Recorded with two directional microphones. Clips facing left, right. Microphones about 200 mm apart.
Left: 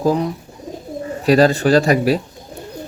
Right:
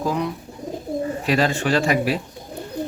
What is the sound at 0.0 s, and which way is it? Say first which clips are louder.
Speech: left 6 dB; 35° left (ahead or behind).